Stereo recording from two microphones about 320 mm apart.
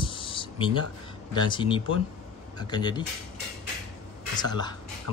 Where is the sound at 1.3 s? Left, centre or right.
Centre.